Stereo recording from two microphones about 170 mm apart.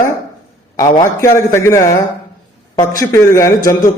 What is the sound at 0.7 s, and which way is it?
A man's voice, 20° left (ahead or behind).